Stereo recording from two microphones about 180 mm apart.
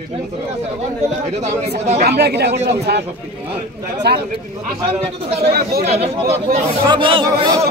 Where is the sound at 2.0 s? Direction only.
65° right (ahead or behind).